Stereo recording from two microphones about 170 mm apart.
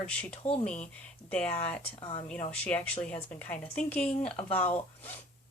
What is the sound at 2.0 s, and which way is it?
Speech, 35° left (ahead or behind).